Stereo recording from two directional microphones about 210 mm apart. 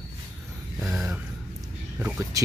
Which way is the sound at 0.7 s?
Centre (ahead or behind).